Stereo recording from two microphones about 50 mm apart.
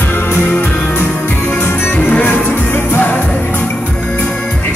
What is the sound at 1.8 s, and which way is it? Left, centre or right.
Music, left.